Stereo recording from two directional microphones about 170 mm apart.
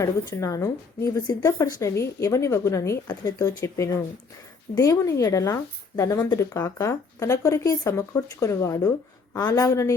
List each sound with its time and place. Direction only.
0.0 s a woman's voice: 20° left (ahead or behind)